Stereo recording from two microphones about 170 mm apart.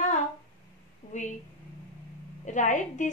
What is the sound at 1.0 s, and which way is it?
Speech, 40° left (ahead or behind).